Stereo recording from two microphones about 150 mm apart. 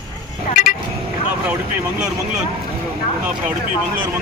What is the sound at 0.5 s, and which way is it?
Vehicle, 65° left (ahead or behind).